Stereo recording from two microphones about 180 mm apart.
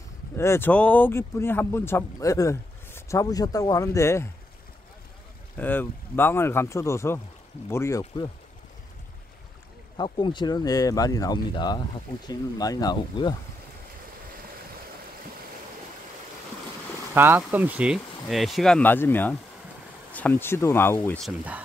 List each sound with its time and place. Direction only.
0.4 s speech: 15° left (ahead or behind)
5.6 s speech: 10° left (ahead or behind)
9.9 s speech: 25° left (ahead or behind)
17.1 s speech: 10° right (ahead or behind); by 21.2 s 15° left (ahead or behind)
21.2 s speech: 5° right (ahead or behind)